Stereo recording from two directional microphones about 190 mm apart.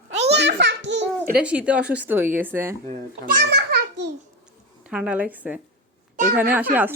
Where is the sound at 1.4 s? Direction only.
5° right (ahead or behind).